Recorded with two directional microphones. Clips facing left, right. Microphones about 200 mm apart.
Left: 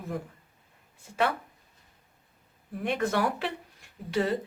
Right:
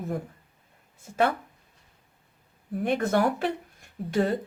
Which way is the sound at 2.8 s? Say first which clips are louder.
Right 3 dB; 45° right (ahead or behind).